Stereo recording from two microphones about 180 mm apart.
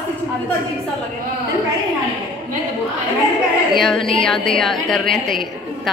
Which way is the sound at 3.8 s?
Centre (ahead or behind).